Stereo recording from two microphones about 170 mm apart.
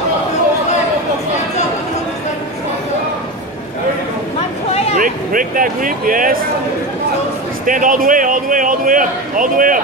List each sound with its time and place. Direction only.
4.9 s speech: 55° right (ahead or behind)
7.6 s a man's voice: 50° right (ahead or behind)